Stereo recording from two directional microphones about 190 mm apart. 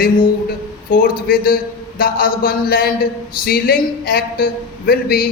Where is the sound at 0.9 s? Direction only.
50° left (ahead or behind).